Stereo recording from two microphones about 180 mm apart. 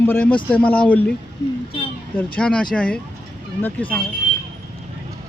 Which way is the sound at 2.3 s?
5° left (ahead or behind).